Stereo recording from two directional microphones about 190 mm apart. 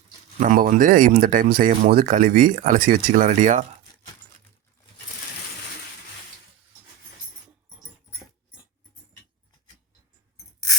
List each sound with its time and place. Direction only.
0.3 s speech: 45° right (ahead or behind)